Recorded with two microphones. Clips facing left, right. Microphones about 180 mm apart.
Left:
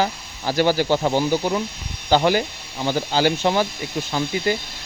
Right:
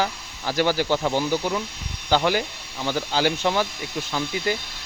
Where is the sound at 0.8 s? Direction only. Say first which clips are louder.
Left 3 dB; 15° left (ahead or behind).